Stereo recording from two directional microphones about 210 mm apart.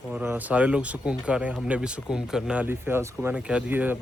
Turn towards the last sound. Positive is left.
turn(degrees=-10)  # may be behind; listen again after turning